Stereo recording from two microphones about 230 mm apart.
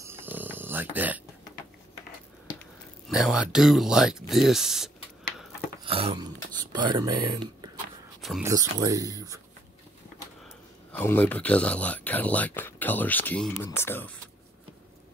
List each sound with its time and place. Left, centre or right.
0.0 s snoring: centre
2.6 s speech: centre
5.9 s a sound: right
6.7 s speech: centre
8.2 s a sound: centre
8.5 s speech: centre
10.9 s speech: centre